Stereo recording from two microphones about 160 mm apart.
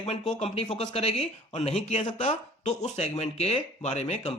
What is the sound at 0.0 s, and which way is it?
Speech, 40° left (ahead or behind).